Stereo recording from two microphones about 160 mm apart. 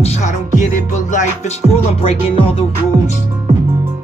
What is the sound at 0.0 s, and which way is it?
Music, 45° left (ahead or behind).